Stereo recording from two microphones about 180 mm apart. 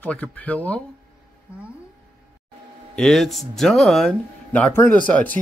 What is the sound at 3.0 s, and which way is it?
Speech, centre (ahead or behind).